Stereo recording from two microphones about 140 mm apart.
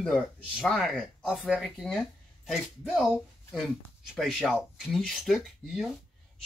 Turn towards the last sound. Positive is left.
turn(degrees=0)  # may be behind; listen again after turning